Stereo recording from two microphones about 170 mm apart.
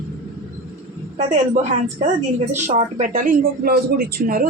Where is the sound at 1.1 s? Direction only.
40° right (ahead or behind).